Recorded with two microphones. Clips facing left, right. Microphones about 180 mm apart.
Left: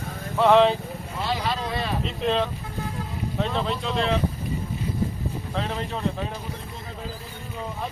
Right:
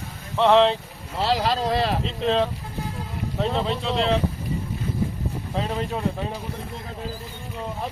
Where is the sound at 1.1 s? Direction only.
90° right.